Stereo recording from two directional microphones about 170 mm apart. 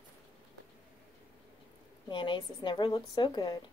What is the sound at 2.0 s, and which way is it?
A woman's voice, 30° left (ahead or behind).